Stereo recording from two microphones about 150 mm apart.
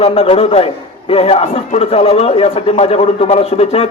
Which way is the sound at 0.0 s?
40° left (ahead or behind).